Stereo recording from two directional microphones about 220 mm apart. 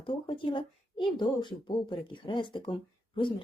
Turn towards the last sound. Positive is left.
turn(degrees=20)  # may be behind; listen again after turning